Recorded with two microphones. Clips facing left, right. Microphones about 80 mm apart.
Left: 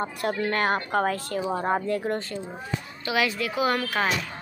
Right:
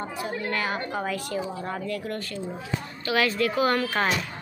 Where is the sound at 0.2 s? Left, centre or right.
Left.